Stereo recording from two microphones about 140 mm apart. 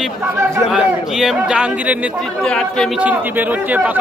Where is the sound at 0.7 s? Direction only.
5° right (ahead or behind).